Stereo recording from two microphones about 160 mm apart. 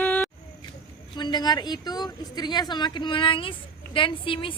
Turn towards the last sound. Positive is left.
turn(degrees=35)  # may be behind; listen again after turning